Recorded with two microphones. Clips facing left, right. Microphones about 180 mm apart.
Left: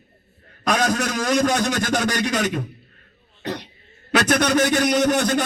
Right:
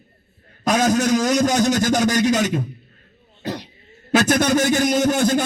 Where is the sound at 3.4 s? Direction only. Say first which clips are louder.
Right 1 dB; 10° right (ahead or behind).